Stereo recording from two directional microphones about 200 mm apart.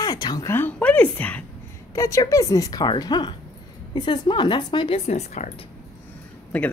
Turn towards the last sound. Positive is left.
turn(degrees=5)  # may be behind; listen again after turning